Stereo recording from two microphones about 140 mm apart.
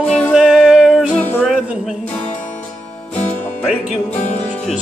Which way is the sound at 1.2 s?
10° left (ahead or behind).